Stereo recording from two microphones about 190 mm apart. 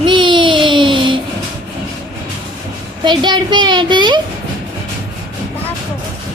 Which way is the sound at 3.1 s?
25° right (ahead or behind).